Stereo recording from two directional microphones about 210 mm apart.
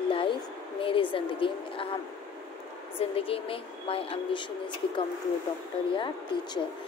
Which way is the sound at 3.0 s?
25° left (ahead or behind).